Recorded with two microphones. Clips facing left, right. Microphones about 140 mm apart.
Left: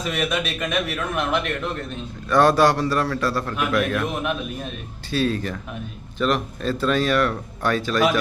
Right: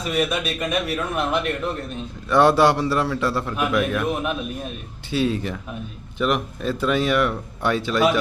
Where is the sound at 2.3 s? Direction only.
20° right (ahead or behind).